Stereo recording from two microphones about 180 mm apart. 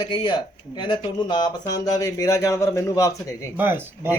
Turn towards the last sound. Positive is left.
turn(degrees=-10)  # may be behind; listen again after turning